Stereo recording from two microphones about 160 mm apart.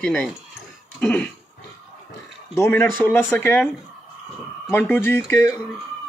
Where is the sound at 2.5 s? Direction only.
15° left (ahead or behind).